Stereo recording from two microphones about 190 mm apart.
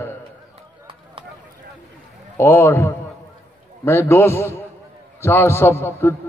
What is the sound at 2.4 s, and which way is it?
A man's voice, 15° left (ahead or behind).